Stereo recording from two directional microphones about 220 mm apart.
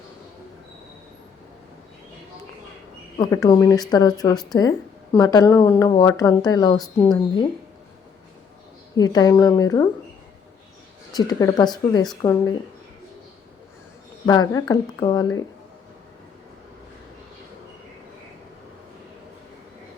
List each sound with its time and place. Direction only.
3.2 s a woman's voice: 15° left (ahead or behind)
9.0 s speech: 15° left (ahead or behind)
11.1 s speech: 15° left (ahead or behind)
14.3 s speech: 15° left (ahead or behind)